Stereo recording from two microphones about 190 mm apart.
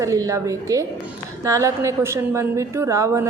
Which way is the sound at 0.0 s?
15° right (ahead or behind).